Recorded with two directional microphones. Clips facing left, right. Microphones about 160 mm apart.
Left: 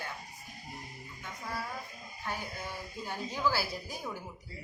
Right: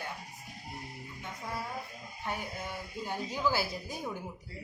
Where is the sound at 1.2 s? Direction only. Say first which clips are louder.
Even; 25° right (ahead or behind).